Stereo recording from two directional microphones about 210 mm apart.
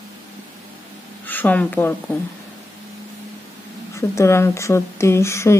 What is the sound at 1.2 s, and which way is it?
Speech, 10° left (ahead or behind).